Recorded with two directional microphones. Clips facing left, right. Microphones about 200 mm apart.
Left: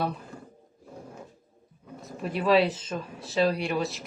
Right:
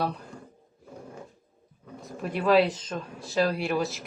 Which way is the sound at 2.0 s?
Centre (ahead or behind).